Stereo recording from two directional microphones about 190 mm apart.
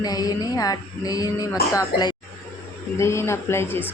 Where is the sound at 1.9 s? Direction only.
55° left (ahead or behind).